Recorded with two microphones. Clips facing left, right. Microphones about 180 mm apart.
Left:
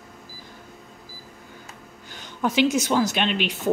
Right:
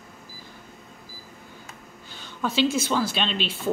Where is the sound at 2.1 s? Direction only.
15° left (ahead or behind).